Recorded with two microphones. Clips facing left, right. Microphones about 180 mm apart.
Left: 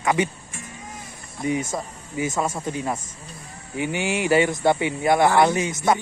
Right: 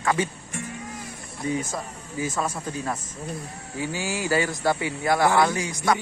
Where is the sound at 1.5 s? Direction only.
20° left (ahead or behind).